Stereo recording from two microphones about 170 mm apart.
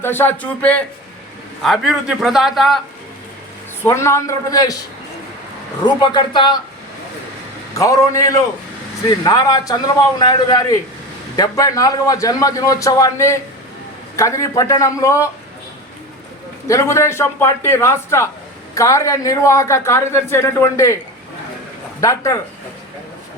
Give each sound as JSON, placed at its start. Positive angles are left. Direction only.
{"t": 0.0, "sound": "a man's voice", "side_deg": 10}
{"t": 3.8, "sound": "a man's voice", "side_deg": 15}
{"t": 5.8, "sound": "a man's voice", "side_deg": 25}
{"t": 7.8, "sound": "a man's voice", "side_deg": 20}
{"t": 16.6, "sound": "a man's voice", "side_deg": 15}
{"t": 22.0, "sound": "a man's voice", "side_deg": 20}